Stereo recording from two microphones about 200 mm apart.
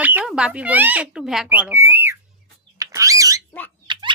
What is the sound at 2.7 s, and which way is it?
Bird, 15° right (ahead or behind).